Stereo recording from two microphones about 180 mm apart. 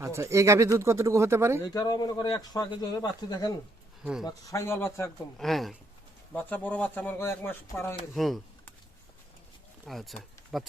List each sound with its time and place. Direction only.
0.0 s speech: 15° right (ahead or behind)
1.6 s speech: 20° left (ahead or behind)
5.4 s speech: centre (ahead or behind)
7.9 s speech: centre (ahead or behind)
9.8 s speech: centre (ahead or behind)